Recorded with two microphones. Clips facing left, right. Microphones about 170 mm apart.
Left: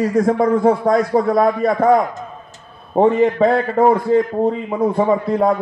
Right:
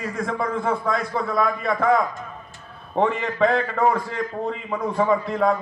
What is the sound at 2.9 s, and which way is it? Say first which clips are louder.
Speech: left 8 dB; 45° left (ahead or behind).